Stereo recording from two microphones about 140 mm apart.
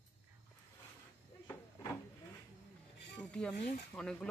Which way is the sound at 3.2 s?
5° left (ahead or behind).